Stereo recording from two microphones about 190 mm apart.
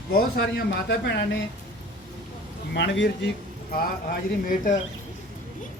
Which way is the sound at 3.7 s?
50° left (ahead or behind).